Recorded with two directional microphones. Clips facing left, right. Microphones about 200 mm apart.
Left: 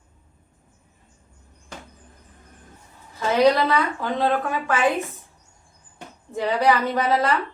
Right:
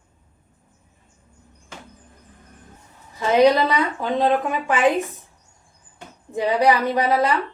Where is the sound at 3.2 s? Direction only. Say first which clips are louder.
Right 2 dB; 15° right (ahead or behind).